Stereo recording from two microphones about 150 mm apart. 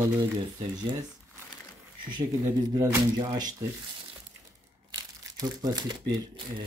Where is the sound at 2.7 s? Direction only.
20° right (ahead or behind).